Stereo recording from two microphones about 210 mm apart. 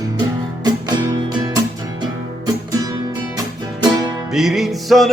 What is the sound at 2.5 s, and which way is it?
Music, 15° right (ahead or behind).